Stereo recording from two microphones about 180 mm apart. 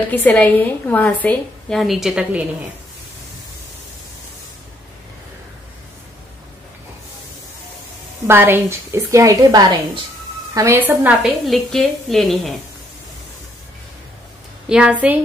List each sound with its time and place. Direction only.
0.1 s a woman's voice: 10° left (ahead or behind)
8.3 s a woman's voice: 10° right (ahead or behind)
14.7 s a woman's voice: 5° right (ahead or behind)